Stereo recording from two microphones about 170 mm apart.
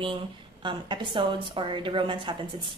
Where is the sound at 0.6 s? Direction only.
25° right (ahead or behind).